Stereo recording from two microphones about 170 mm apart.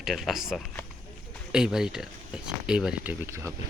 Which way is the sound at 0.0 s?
Centre (ahead or behind).